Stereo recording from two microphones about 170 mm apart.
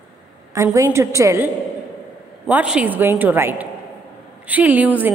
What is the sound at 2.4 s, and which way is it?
A woman's voice, 5° right (ahead or behind).